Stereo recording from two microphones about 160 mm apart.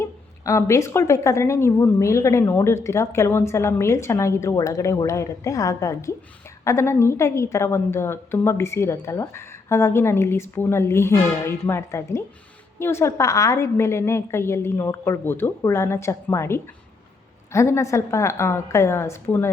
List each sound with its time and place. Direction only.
0.0 s a woman's voice: 20° left (ahead or behind)